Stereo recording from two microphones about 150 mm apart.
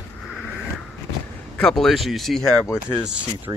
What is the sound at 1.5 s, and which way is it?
Speech, 5° left (ahead or behind).